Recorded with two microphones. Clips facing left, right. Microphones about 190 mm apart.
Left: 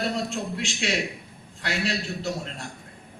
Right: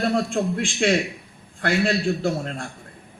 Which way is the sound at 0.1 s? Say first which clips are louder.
Right 7 dB; 50° right (ahead or behind).